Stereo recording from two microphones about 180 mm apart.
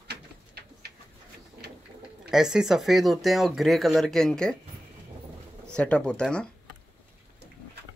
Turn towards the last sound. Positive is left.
turn(degrees=5)  # may be behind; listen again after turning